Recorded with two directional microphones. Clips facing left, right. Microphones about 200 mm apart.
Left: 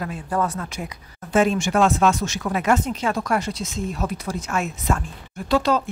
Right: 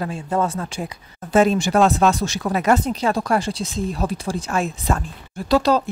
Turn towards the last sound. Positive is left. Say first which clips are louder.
# right 3 dB
turn(degrees=-35)  # may be behind; listen again after turning